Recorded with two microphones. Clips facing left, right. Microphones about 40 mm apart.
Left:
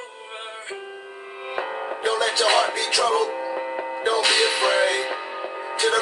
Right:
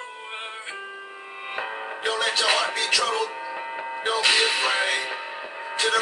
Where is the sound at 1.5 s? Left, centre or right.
Centre.